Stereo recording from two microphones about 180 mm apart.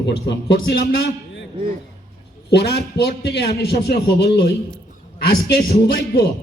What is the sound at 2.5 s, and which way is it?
A man's voice, 65° left (ahead or behind).